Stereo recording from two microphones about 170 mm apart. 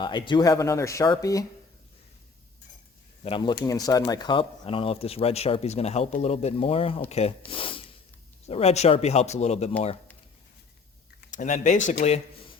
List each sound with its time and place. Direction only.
0.0 s speech: 25° left (ahead or behind)
3.2 s speech: 30° left (ahead or behind)
11.3 s speech: 50° left (ahead or behind)
11.9 s speech: 35° left (ahead or behind)